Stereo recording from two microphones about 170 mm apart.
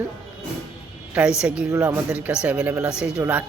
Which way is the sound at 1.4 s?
5° right (ahead or behind).